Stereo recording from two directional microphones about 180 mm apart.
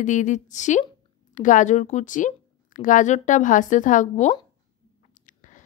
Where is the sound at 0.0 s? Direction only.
45° left (ahead or behind).